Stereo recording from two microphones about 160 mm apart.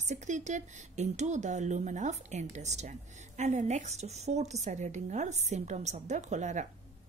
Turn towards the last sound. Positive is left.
turn(degrees=-45)  # may be behind; listen again after turning